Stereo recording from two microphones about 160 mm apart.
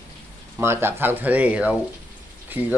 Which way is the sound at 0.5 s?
15° right (ahead or behind).